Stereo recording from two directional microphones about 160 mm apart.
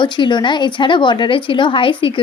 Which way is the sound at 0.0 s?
30° left (ahead or behind).